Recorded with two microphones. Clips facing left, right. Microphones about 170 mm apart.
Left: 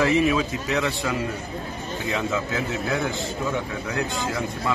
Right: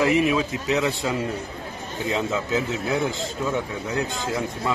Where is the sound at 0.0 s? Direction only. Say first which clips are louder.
Even; 20° right (ahead or behind).